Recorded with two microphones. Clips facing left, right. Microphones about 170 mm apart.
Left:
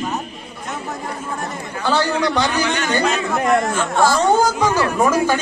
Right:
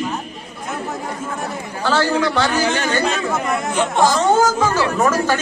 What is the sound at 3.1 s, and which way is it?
Speech, centre (ahead or behind).